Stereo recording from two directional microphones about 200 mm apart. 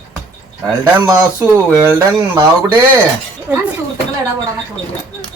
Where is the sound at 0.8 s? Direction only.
10° right (ahead or behind).